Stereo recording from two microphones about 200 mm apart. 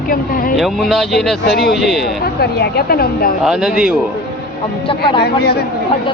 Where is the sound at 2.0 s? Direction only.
55° left (ahead or behind).